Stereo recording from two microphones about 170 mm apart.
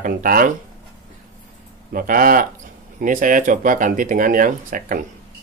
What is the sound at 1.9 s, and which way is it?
Speech, 55° right (ahead or behind).